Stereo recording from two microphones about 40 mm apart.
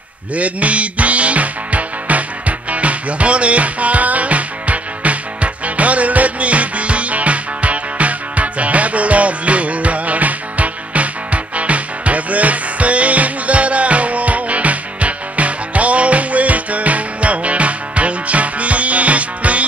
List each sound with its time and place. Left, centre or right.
0.4 s music: right